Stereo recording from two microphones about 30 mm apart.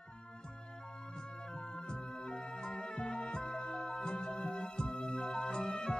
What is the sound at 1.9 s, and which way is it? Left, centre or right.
Music, left.